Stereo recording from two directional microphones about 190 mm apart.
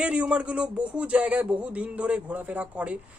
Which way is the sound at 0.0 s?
5° right (ahead or behind).